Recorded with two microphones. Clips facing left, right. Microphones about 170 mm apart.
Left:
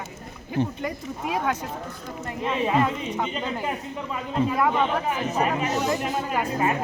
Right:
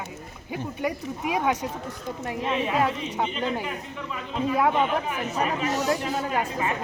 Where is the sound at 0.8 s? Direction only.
10° right (ahead or behind).